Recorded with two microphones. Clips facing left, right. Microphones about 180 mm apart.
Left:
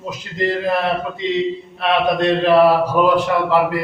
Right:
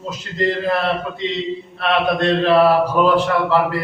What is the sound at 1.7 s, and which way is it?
A man's voice, 15° left (ahead or behind).